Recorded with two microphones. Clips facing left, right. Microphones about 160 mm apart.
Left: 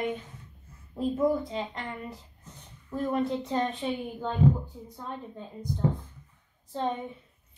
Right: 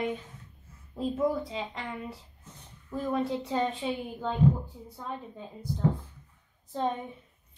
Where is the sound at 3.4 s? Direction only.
10° right (ahead or behind).